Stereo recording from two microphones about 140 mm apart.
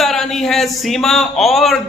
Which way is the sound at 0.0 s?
Centre (ahead or behind).